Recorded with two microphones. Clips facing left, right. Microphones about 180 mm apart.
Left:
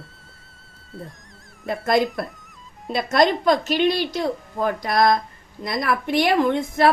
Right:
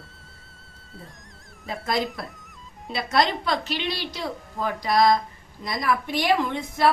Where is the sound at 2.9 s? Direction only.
50° left (ahead or behind).